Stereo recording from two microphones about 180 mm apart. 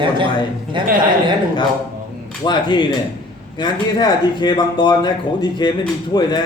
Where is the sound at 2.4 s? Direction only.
25° left (ahead or behind).